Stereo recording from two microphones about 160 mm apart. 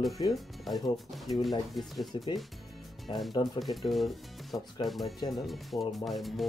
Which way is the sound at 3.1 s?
30° left (ahead or behind).